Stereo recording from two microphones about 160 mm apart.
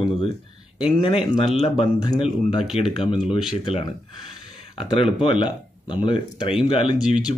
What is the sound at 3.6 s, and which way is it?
Speech, 30° left (ahead or behind).